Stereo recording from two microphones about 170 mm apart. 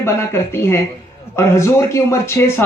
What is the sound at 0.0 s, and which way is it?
A man's voice, 15° left (ahead or behind).